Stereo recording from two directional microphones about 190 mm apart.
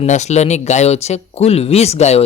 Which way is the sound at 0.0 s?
35° left (ahead or behind).